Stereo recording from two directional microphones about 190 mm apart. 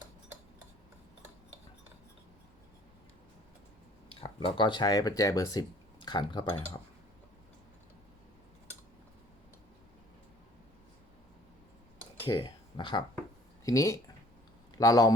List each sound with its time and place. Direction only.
4.1 s speech: 30° left (ahead or behind)
12.2 s a man's voice: 25° left (ahead or behind)